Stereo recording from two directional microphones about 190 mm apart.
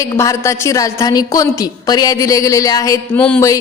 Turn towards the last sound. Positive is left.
turn(degrees=5)  # may be behind; listen again after turning